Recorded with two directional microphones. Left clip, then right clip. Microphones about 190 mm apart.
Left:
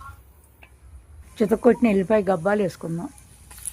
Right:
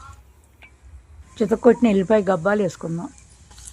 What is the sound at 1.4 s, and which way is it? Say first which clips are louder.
Speech: right 2 dB; centre (ahead or behind).